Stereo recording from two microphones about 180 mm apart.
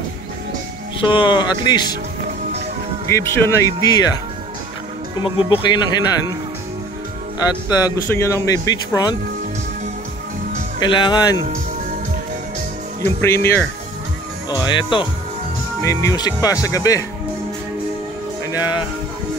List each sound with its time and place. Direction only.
1.0 s speech: 25° left (ahead or behind)
3.1 s speech: 15° left (ahead or behind)
5.2 s speech: 25° left (ahead or behind)
7.3 s speech: 20° left (ahead or behind)
10.8 s speech: 25° left (ahead or behind)
13.0 s speech: 15° left (ahead or behind)
14.5 s speech: 25° left (ahead or behind)
18.5 s music: 25° left (ahead or behind)